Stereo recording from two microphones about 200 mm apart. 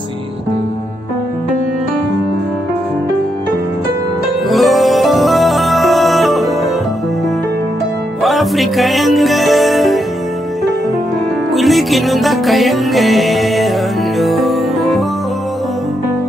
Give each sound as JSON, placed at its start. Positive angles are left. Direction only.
{"t": 4.5, "sound": "music", "side_deg": 0}
{"t": 8.2, "sound": "music", "side_deg": 0}
{"t": 11.5, "sound": "music", "side_deg": 0}